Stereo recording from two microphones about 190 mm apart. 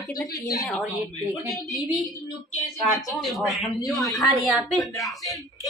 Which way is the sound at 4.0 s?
20° left (ahead or behind).